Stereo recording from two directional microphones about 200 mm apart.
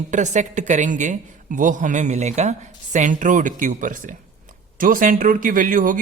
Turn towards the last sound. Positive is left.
turn(degrees=-40)  # may be behind; listen again after turning